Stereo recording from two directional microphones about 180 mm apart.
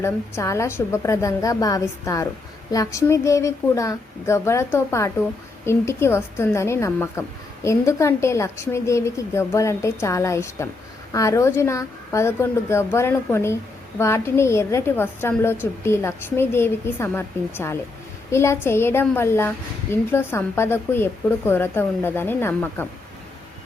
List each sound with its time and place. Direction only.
0.0 s a woman's voice: 15° left (ahead or behind)